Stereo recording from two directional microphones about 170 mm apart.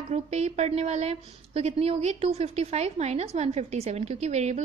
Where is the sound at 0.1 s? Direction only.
40° right (ahead or behind).